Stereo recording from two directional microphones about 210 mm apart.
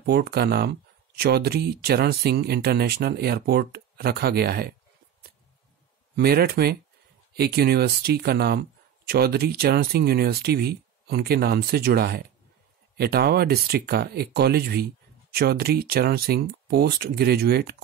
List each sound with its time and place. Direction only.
0.0 s speech: 50° right (ahead or behind)
6.1 s speech: 50° right (ahead or behind)